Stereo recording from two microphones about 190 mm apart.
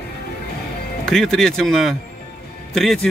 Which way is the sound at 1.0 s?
Centre (ahead or behind).